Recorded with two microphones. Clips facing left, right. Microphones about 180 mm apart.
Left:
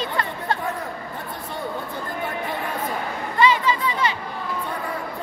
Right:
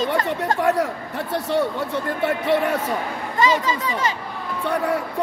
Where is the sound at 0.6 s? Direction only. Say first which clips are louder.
Right 9 dB; 80° right.